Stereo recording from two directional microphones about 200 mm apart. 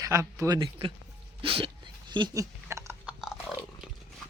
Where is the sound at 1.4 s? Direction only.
25° right (ahead or behind).